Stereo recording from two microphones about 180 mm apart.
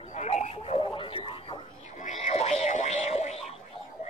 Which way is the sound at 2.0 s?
40° left (ahead or behind).